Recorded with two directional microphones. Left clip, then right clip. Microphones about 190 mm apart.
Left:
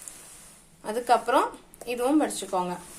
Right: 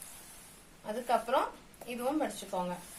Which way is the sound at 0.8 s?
35° left (ahead or behind).